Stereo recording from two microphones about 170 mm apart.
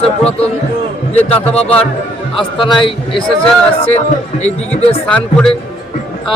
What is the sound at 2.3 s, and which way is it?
Speech, 30° left (ahead or behind).